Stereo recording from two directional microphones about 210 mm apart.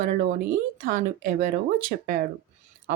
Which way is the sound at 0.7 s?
40° right (ahead or behind).